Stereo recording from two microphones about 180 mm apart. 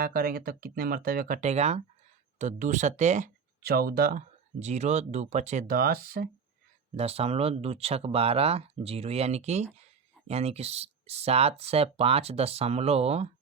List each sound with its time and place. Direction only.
0.0 s speech: 55° right (ahead or behind)
3.6 s speech: 60° right (ahead or behind)
4.6 s speech: 40° right (ahead or behind); by 6.2 s 55° right (ahead or behind)
6.9 s speech: 35° right (ahead or behind)